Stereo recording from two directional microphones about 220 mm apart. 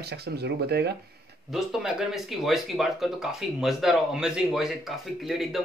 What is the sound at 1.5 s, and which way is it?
Speech, centre (ahead or behind).